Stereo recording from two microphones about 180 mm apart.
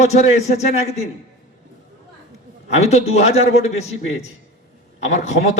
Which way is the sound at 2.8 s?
35° left (ahead or behind).